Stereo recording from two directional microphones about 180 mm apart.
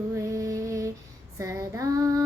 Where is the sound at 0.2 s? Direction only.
15° right (ahead or behind).